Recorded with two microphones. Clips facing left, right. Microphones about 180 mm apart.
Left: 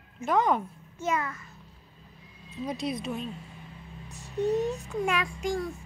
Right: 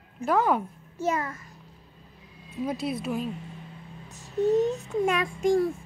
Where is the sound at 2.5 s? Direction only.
5° right (ahead or behind).